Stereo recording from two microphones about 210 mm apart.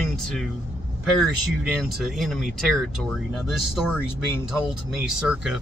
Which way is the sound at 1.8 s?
Centre (ahead or behind).